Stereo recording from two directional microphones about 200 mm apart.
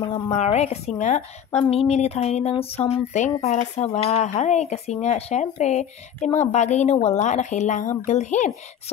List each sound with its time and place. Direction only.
0.3 s speech: 35° left (ahead or behind)